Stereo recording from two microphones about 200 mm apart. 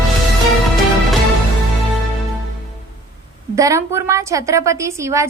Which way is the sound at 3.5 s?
15° right (ahead or behind).